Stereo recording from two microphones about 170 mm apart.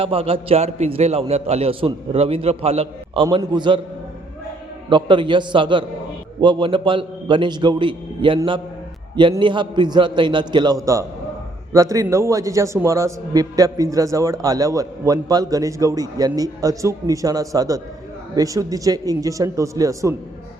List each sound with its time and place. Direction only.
0.0 s a man's voice: 35° right (ahead or behind)
4.9 s a man's voice: 30° right (ahead or behind)
9.4 s a man's voice: 30° right (ahead or behind)